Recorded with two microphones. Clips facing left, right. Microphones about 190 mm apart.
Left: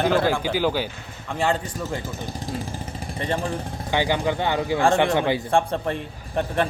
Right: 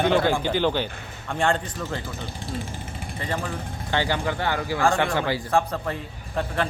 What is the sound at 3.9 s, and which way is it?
Speech, 15° left (ahead or behind).